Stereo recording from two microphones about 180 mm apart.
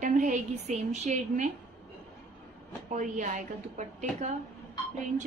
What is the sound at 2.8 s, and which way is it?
A woman's voice, 45° right (ahead or behind).